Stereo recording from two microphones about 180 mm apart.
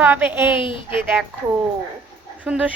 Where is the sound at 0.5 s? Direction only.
30° left (ahead or behind).